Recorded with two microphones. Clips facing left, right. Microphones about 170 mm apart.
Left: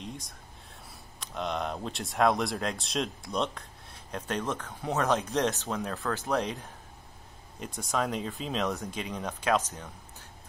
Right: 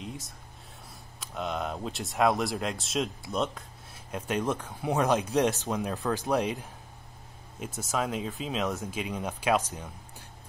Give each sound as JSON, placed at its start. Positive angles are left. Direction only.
{"t": 0.0, "sound": "a sound", "side_deg": -5}
{"t": 1.2, "sound": "speech", "side_deg": 0}
{"t": 7.6, "sound": "speech", "side_deg": -5}